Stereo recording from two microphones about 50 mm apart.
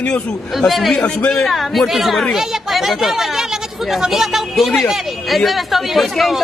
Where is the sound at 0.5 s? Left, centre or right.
Centre.